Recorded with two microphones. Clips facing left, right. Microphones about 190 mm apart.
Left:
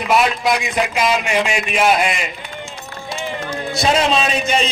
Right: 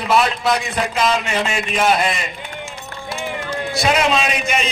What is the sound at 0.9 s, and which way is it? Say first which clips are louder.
A man's voice: even; 10° left (ahead or behind).